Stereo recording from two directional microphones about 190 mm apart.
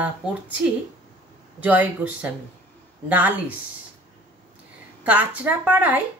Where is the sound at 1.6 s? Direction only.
10° right (ahead or behind).